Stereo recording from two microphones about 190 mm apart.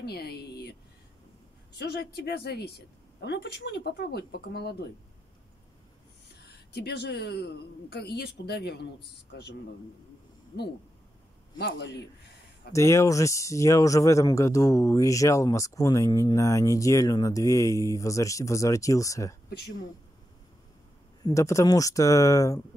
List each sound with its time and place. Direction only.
0.0 s a sound: 55° left (ahead or behind)
1.8 s a woman's voice: 60° left (ahead or behind)
6.4 s a woman's voice: 60° left (ahead or behind)
11.5 s a woman's voice: 60° left (ahead or behind)
12.7 s speech: 15° left (ahead or behind)
21.2 s speech: 15° left (ahead or behind)